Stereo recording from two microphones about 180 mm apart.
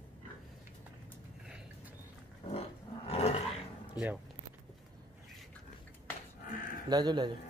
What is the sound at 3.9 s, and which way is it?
Speech, 10° right (ahead or behind).